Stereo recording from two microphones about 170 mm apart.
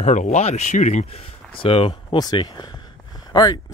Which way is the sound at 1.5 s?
35° left (ahead or behind).